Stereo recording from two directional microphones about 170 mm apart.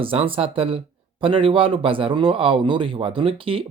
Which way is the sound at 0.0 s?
30° right (ahead or behind).